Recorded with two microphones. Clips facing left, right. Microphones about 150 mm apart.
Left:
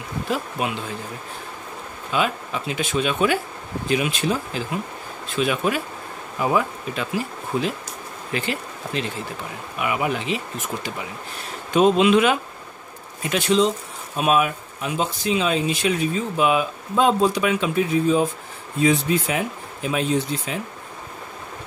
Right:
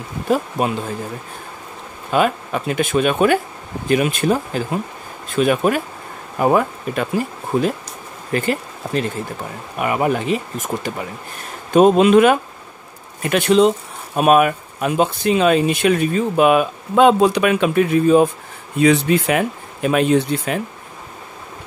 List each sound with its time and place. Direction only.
0.3 s speech: 45° right (ahead or behind)
2.0 s speech: 50° right (ahead or behind)
18.8 s speech: 70° right (ahead or behind)